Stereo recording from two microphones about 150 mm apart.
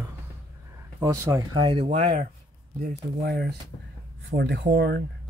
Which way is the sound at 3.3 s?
90° right.